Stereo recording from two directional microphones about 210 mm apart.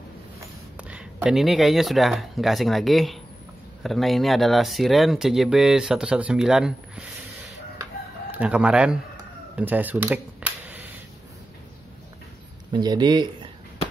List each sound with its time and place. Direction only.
0.4 s speech: 5° right (ahead or behind)
8.3 s speech: 5° right (ahead or behind)
9.6 s camera: 10° right (ahead or behind)
12.7 s speech: 20° right (ahead or behind)